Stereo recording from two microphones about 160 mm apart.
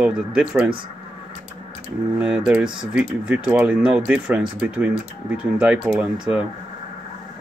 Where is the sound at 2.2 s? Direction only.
5° right (ahead or behind).